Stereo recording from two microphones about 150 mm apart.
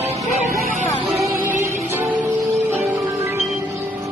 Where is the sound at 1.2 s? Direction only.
20° right (ahead or behind).